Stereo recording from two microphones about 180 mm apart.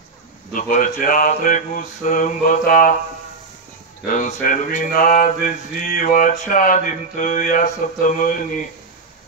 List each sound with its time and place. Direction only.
0.5 s mantra: 45° left (ahead or behind)
4.1 s mantra: 45° left (ahead or behind)